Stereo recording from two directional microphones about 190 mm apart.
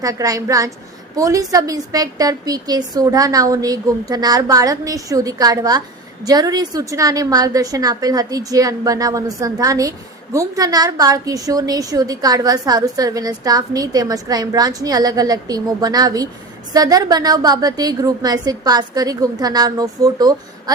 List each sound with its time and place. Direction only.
0.0 s a woman's voice: 20° right (ahead or behind)